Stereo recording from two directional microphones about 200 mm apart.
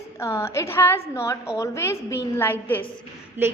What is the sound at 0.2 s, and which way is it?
A woman's voice, 15° left (ahead or behind).